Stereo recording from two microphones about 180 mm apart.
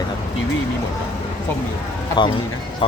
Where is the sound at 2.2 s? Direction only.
25° left (ahead or behind).